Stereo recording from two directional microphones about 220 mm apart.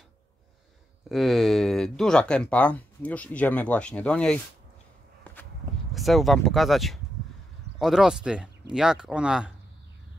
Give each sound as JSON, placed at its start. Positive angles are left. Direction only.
{"t": 1.0, "sound": "speech", "side_deg": 0}
{"t": 5.9, "sound": "speech", "side_deg": 0}